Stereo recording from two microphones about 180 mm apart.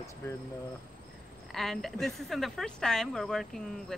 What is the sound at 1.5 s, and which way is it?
A woman's voice, centre (ahead or behind).